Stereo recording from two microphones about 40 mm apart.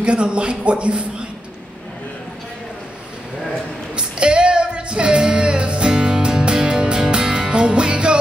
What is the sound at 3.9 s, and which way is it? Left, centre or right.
Music, right.